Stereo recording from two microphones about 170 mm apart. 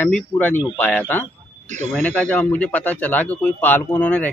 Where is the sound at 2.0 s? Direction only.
10° left (ahead or behind).